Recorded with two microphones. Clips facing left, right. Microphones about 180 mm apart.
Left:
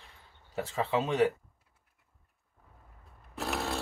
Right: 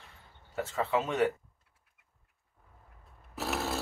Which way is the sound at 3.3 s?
Centre (ahead or behind).